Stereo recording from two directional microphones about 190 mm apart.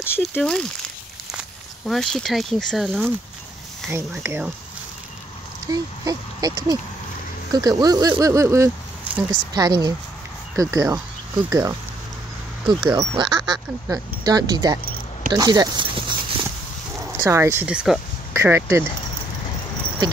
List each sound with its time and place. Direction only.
0.3 s speech: 5° left (ahead or behind)
1.9 s speech: centre (ahead or behind)
3.9 s speech: 10° right (ahead or behind)
5.7 s speech: 20° right (ahead or behind)
8.1 s a sound: 15° right (ahead or behind)
9.3 s speech: 20° right (ahead or behind); by 18.0 s 5° right (ahead or behind)
18.3 s speech: 15° right (ahead or behind)